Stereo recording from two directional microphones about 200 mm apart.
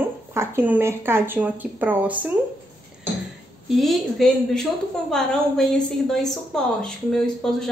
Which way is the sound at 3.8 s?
Centre (ahead or behind).